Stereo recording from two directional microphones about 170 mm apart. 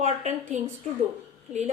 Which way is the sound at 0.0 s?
45° right (ahead or behind).